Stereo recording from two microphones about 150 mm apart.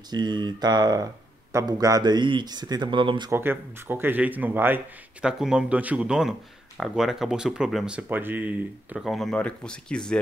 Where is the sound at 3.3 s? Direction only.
15° right (ahead or behind).